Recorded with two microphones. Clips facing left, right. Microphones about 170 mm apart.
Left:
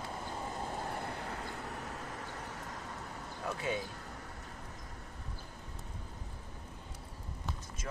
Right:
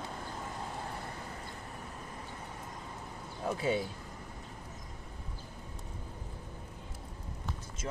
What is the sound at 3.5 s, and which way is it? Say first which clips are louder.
Speech: right 5 dB; 30° right (ahead or behind).